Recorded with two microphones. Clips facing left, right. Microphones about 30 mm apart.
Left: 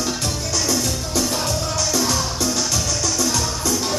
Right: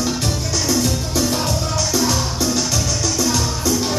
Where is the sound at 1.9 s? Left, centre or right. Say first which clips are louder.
Right 3 dB; centre.